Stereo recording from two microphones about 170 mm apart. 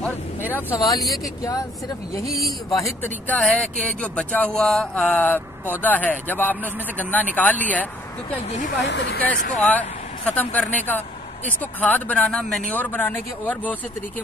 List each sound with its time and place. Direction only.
0.5 s speech: 10° left (ahead or behind)
0.9 s speech: centre (ahead or behind)
1.4 s speech: 20° left (ahead or behind)
2.7 s speech: 15° left (ahead or behind)
8.8 s speech: 90° left
9.6 s speech: 10° left (ahead or behind)